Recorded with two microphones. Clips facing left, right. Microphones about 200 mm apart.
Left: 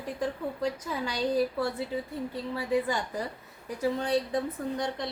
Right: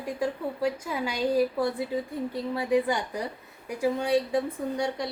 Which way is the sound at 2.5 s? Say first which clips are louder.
Right 3 dB; 15° right (ahead or behind).